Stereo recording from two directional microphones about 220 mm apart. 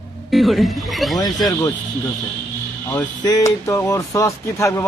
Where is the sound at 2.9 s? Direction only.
15° left (ahead or behind).